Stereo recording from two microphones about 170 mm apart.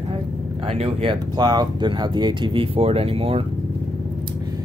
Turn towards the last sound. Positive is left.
turn(degrees=-35)  # may be behind; listen again after turning